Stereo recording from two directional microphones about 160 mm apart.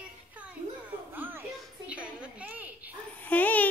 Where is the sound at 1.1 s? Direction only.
10° right (ahead or behind).